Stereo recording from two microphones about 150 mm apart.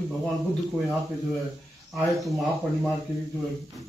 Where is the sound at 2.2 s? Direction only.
Centre (ahead or behind).